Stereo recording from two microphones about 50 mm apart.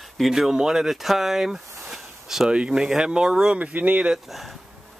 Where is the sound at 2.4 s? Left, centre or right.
Centre.